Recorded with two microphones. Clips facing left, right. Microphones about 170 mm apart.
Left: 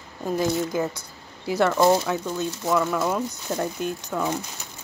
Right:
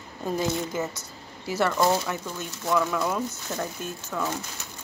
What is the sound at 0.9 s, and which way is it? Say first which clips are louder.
Speech: even; 15° left (ahead or behind).